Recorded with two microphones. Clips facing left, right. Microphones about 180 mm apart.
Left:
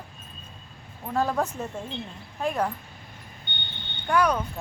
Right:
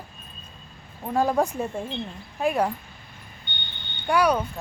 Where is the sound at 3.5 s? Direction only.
55° left (ahead or behind).